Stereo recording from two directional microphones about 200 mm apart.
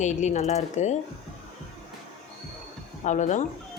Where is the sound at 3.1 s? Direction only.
35° left (ahead or behind).